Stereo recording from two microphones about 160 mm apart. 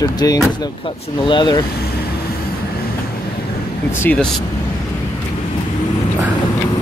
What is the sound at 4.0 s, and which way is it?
Speech, 10° left (ahead or behind).